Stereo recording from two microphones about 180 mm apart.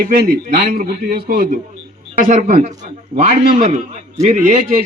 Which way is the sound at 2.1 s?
50° right (ahead or behind).